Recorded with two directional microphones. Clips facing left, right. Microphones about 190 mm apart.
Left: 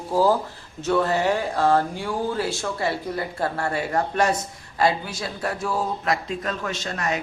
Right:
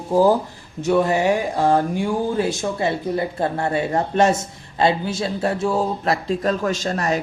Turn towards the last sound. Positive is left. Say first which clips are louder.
# right 5 dB
turn(degrees=-35)  # may be behind; listen again after turning